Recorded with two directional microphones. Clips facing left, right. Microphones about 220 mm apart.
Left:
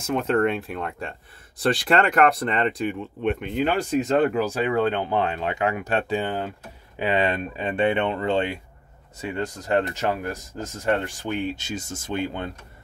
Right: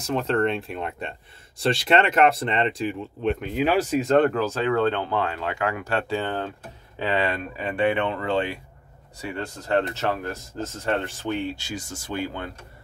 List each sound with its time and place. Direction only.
0.0 s speech: 5° left (ahead or behind)
4.3 s speech: 15° left (ahead or behind)